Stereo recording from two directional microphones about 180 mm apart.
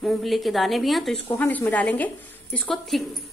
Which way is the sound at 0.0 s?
Centre (ahead or behind).